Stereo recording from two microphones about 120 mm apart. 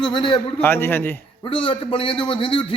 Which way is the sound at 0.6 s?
20° left (ahead or behind).